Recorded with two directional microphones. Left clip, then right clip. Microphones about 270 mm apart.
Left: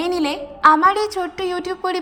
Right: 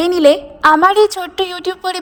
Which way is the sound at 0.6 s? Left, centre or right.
Right.